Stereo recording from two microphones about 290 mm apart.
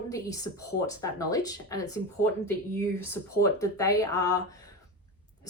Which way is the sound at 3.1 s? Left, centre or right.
Centre.